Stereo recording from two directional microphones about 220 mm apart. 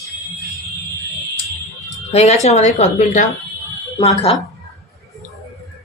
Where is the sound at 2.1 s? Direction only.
30° left (ahead or behind).